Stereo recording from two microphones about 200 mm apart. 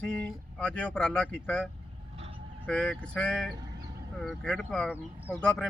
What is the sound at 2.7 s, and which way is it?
Speech, 5° left (ahead or behind).